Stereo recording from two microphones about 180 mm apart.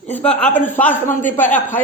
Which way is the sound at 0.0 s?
5° left (ahead or behind).